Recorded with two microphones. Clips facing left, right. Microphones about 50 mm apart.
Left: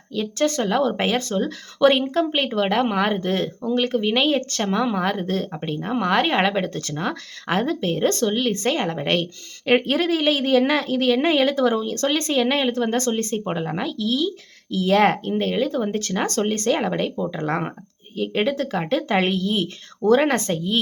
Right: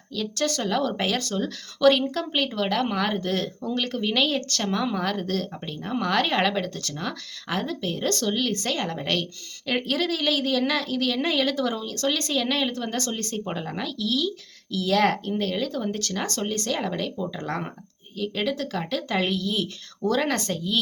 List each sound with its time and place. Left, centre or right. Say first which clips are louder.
0.1 s speech: left 5 dB; left
9.6 s a woman's voice: left 6 dB; left